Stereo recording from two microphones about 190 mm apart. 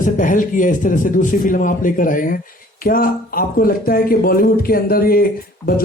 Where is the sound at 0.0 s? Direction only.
45° left (ahead or behind).